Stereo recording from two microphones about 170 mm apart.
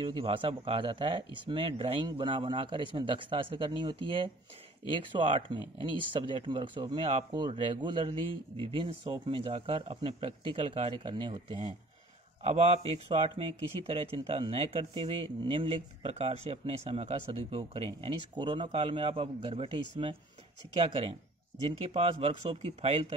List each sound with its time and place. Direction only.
0.0 s speech: 30° right (ahead or behind)
12.4 s speech: 35° right (ahead or behind)
21.6 s speech: 35° right (ahead or behind)